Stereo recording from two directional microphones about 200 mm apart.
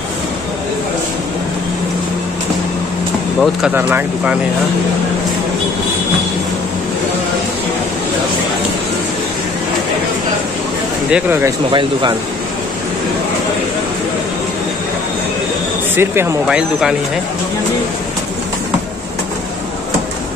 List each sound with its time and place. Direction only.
3.3 s speech: 5° right (ahead or behind)
11.1 s speech: 5° right (ahead or behind)
11.7 s speech: 25° right (ahead or behind)
16.0 s speech: 10° right (ahead or behind)